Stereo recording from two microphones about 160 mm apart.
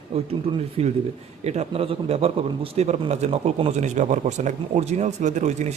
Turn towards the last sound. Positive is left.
turn(degrees=-45)  # may be behind; listen again after turning